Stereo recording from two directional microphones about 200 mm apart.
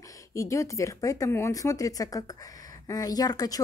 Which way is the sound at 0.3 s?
15° left (ahead or behind).